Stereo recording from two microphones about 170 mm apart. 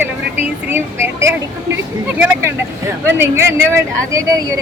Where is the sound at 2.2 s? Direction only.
10° right (ahead or behind).